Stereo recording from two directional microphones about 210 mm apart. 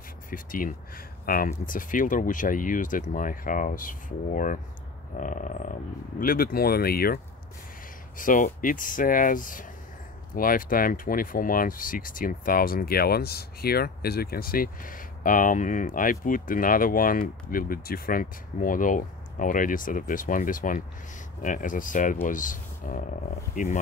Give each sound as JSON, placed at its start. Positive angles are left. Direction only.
{"t": 0.3, "sound": "speech", "side_deg": 40}
{"t": 8.2, "sound": "speech", "side_deg": 40}